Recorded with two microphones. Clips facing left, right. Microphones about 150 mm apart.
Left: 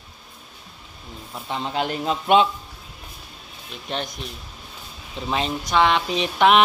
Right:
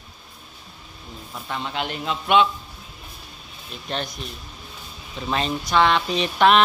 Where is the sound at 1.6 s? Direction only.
35° left (ahead or behind).